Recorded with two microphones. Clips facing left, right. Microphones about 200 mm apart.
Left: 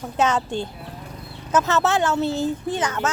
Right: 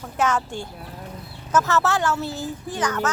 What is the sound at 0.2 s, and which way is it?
Speech, 20° left (ahead or behind).